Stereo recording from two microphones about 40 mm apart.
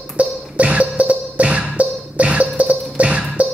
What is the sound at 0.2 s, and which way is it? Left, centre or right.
Music, right.